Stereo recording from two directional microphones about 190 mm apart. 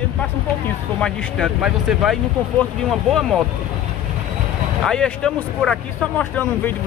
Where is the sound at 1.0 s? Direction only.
Centre (ahead or behind).